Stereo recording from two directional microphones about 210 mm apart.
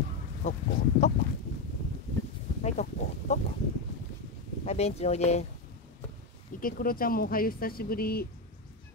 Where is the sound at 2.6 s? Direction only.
30° left (ahead or behind).